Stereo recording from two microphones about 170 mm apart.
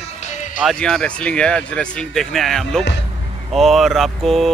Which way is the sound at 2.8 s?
90° left.